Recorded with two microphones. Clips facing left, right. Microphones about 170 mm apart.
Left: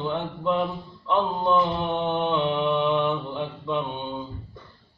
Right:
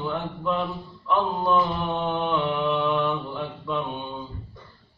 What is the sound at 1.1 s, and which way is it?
Mantra, 20° left (ahead or behind).